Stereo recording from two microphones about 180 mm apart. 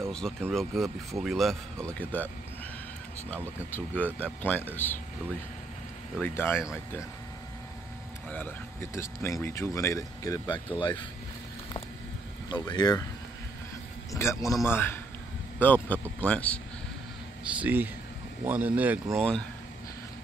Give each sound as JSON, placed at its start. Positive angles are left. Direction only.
{"t": 0.0, "sound": "speech", "side_deg": 5}
{"t": 3.7, "sound": "speech", "side_deg": 10}
{"t": 6.2, "sound": "speech", "side_deg": 10}
{"t": 8.3, "sound": "speech", "side_deg": 10}
{"t": 12.4, "sound": "speech", "side_deg": 25}
{"t": 14.1, "sound": "speech", "side_deg": 15}
{"t": 17.6, "sound": "speech", "side_deg": -10}